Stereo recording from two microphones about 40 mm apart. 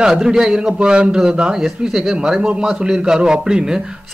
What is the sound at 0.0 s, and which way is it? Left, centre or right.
A man's voice, centre.